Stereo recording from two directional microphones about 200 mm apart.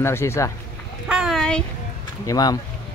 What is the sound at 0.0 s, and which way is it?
Speech, 15° left (ahead or behind).